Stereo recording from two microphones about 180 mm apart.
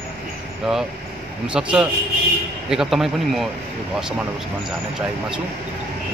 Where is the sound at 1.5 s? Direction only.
5° right (ahead or behind).